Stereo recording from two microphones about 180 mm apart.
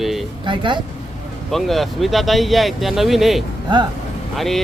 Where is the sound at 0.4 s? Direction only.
25° right (ahead or behind).